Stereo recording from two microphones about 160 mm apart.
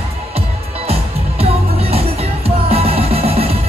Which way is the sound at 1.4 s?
40° right (ahead or behind).